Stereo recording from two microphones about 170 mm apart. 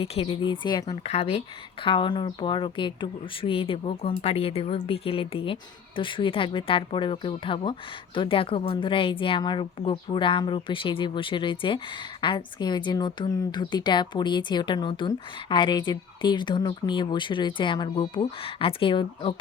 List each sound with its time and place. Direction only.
0.0 s a woman's voice: 35° left (ahead or behind)